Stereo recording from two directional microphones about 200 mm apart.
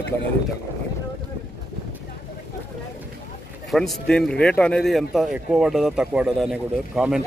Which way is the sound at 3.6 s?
Centre (ahead or behind).